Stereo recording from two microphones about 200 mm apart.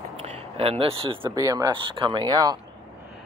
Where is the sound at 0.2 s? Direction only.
30° right (ahead or behind).